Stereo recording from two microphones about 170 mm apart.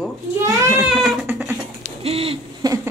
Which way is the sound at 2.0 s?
35° right (ahead or behind).